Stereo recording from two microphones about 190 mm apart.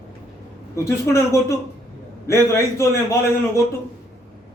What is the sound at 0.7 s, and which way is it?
A man's voice, 15° left (ahead or behind).